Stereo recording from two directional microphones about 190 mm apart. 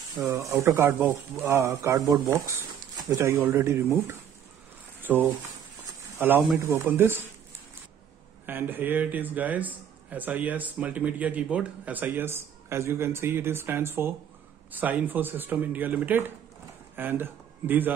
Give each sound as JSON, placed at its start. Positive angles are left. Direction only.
{"t": 0.1, "sound": "speech", "side_deg": -15}
{"t": 8.5, "sound": "a man's voice", "side_deg": -10}